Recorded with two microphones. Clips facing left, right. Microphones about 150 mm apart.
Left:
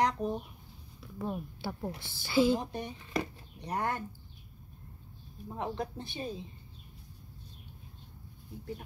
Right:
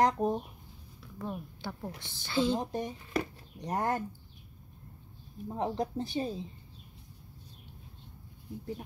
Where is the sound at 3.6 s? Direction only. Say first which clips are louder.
Right 2 dB; 40° right (ahead or behind).